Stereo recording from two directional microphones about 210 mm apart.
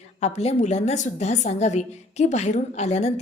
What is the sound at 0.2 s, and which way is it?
A woman's voice, 30° left (ahead or behind).